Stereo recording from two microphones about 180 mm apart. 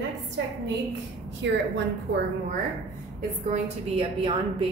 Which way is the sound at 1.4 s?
85° right.